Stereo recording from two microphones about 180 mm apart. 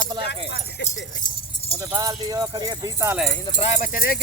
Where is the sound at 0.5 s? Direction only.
75° left (ahead or behind).